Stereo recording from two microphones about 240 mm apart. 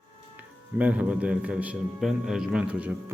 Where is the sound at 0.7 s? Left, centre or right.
Centre.